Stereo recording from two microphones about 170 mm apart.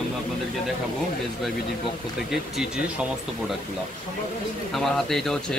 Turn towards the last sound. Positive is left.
turn(degrees=0)  # may be behind; listen again after turning